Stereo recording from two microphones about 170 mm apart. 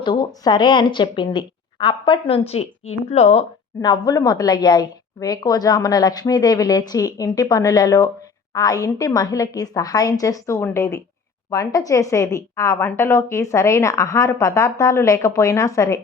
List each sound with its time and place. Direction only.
0.0 s a woman's voice: 25° left (ahead or behind)
3.8 s a woman's voice: 20° left (ahead or behind)